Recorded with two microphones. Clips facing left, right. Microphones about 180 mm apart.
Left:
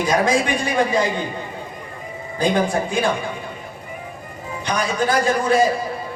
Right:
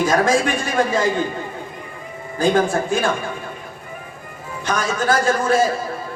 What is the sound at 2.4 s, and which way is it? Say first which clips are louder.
Speech: right 2 dB; 45° right (ahead or behind).